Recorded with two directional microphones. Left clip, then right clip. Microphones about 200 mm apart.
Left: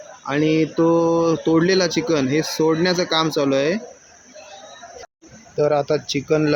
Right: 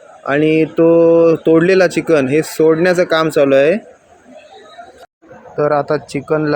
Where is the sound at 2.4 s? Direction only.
25° right (ahead or behind).